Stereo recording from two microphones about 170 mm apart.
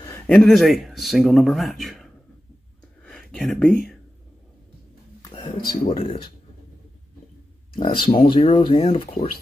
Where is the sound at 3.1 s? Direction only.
5° left (ahead or behind).